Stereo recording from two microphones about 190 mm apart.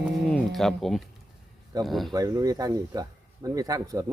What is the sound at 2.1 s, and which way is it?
Speech, 20° right (ahead or behind).